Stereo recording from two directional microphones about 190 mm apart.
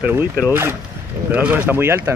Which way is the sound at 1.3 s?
10° right (ahead or behind).